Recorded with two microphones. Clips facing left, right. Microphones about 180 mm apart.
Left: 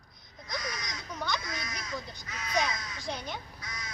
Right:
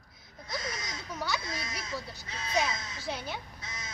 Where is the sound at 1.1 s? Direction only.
5° right (ahead or behind).